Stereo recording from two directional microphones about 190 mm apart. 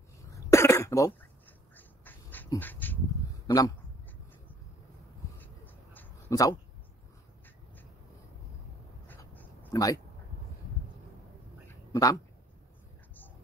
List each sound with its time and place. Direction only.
0.3 s cough: 15° left (ahead or behind)
1.8 s dog: 10° left (ahead or behind)
3.4 s a man's voice: 20° left (ahead or behind)
5.9 s a sound: 15° left (ahead or behind)
9.0 s a sound: 10° left (ahead or behind)
11.9 s speech: 20° left (ahead or behind)